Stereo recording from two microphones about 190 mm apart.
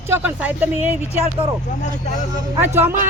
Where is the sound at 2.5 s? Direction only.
10° right (ahead or behind).